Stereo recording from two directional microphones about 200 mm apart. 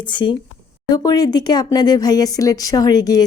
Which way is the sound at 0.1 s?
25° left (ahead or behind).